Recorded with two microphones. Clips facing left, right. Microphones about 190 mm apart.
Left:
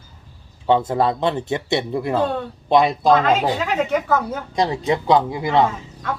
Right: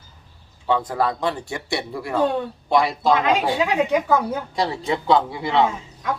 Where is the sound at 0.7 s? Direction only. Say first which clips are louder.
Left 4 dB; 25° left (ahead or behind).